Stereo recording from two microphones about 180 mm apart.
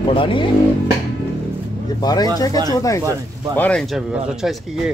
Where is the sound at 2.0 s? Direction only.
20° left (ahead or behind).